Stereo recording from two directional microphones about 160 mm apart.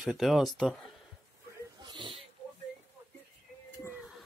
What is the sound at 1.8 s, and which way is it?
Pig, 30° right (ahead or behind).